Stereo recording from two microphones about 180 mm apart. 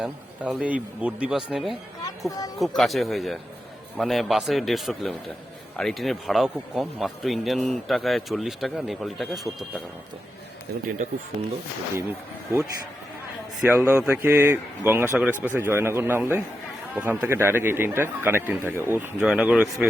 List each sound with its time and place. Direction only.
0.0 s speech: 5° right (ahead or behind)
10.8 s speech: 45° right (ahead or behind)
13.6 s speech: 15° right (ahead or behind)